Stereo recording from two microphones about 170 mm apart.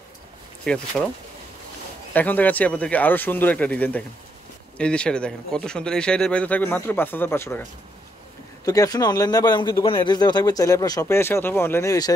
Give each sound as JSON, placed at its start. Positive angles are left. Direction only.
{"t": 0.7, "sound": "speech", "side_deg": 5}
{"t": 2.1, "sound": "speech", "side_deg": 10}
{"t": 8.6, "sound": "speech", "side_deg": 20}